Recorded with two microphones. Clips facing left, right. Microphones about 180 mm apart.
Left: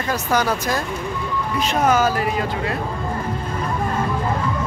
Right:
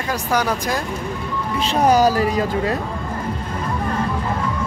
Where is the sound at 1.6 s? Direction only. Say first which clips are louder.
Right 3 dB; 35° right (ahead or behind).